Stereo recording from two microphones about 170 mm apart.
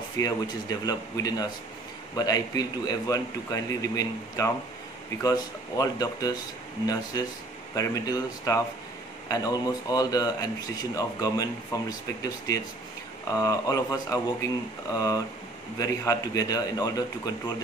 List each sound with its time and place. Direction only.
0.2 s a man's voice: 20° left (ahead or behind)
7.7 s a man's voice: 20° left (ahead or behind)